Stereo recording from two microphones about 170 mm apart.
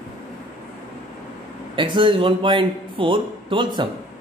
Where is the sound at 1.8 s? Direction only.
30° right (ahead or behind).